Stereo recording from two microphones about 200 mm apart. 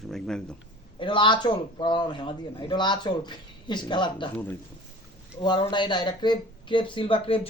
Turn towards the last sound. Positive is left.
turn(degrees=30)  # may be behind; listen again after turning